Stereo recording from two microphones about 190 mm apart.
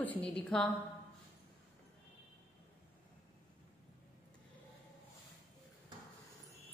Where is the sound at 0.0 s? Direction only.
5° left (ahead or behind).